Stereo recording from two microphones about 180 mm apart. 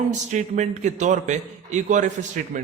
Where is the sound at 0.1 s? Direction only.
40° right (ahead or behind).